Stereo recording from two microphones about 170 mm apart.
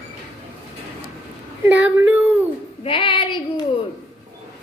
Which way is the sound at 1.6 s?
10° right (ahead or behind).